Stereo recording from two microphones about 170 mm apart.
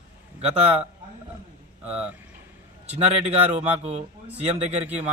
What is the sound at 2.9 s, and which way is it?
Speech, 40° right (ahead or behind).